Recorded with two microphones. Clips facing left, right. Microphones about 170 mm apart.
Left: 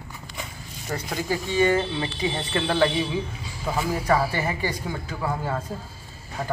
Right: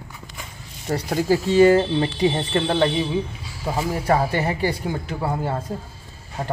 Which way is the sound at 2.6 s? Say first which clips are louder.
Even; 20° right (ahead or behind).